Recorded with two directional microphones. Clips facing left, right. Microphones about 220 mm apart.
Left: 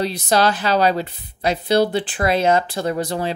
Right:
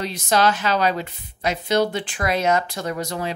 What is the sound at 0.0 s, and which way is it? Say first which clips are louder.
Speech: left 2 dB; 35° left (ahead or behind).